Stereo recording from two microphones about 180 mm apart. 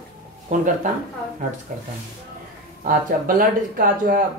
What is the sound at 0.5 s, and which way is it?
Speech, 45° right (ahead or behind).